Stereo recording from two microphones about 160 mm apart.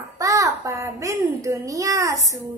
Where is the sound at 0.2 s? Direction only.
20° right (ahead or behind).